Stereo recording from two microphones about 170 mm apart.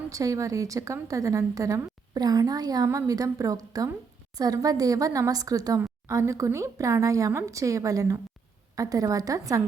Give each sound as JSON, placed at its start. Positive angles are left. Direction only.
{"t": 0.1, "sound": "a woman's voice", "side_deg": -20}